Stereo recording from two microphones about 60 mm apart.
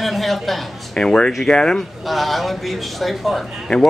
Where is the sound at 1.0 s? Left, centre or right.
Centre.